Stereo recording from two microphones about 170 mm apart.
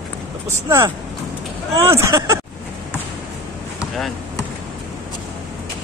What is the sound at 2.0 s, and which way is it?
Speech, 15° right (ahead or behind).